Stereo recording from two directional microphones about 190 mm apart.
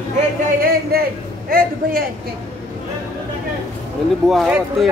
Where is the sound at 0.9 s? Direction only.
55° right (ahead or behind).